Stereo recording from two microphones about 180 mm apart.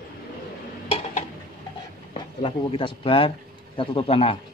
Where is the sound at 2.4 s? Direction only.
30° left (ahead or behind).